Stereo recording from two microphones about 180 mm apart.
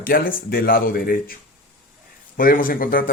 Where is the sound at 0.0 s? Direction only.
55° left (ahead or behind).